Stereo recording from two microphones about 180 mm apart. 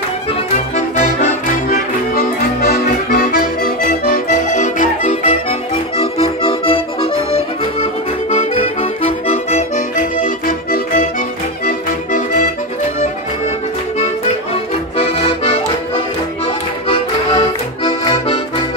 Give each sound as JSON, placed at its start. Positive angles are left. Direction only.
{"t": 1.7, "sound": "accordion", "side_deg": 55}
{"t": 5.2, "sound": "accordion", "side_deg": 35}
{"t": 14.5, "sound": "accordion", "side_deg": 35}
{"t": 16.8, "sound": "accordion", "side_deg": 25}